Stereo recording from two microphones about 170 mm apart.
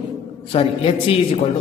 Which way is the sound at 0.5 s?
35° left (ahead or behind).